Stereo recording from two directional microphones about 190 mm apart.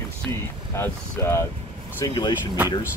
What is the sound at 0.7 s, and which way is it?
Speech, 15° left (ahead or behind).